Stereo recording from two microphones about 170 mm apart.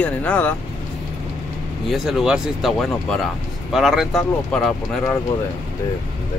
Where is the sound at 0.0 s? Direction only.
10° left (ahead or behind).